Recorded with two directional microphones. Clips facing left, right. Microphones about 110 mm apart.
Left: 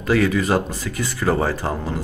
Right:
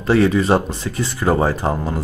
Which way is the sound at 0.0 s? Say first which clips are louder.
Right 3 dB; 30° right (ahead or behind).